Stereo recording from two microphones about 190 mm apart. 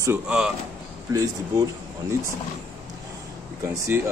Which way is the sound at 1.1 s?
20° right (ahead or behind).